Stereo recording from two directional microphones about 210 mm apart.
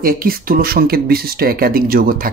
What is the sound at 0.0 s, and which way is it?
Speech, 45° right (ahead or behind).